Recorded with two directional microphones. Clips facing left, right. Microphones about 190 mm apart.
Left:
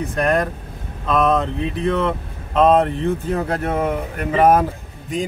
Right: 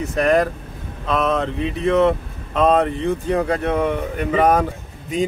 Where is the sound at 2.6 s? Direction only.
Centre (ahead or behind).